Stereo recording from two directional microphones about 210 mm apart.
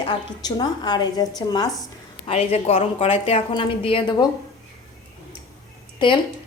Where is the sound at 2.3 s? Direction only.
30° left (ahead or behind).